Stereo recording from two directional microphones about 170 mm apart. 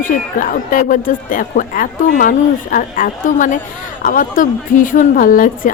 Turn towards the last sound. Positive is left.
turn(degrees=50)  # may be behind; listen again after turning